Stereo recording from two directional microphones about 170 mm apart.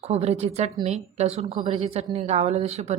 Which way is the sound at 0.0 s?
40° right (ahead or behind).